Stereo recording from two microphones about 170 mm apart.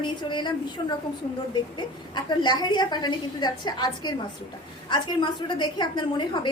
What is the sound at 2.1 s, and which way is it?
Speech, 25° left (ahead or behind).